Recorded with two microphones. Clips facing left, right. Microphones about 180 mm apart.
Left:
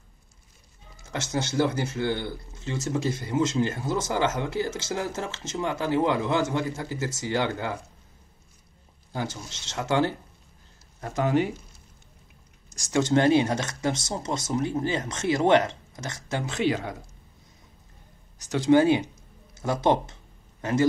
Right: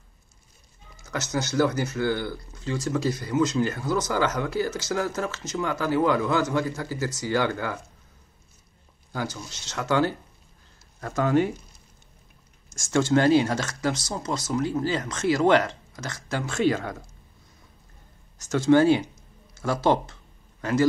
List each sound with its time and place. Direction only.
1.0 s speech: 25° left (ahead or behind)
9.1 s speech: 25° left (ahead or behind)
12.9 s speech: 20° left (ahead or behind)
18.4 s speech: 15° left (ahead or behind)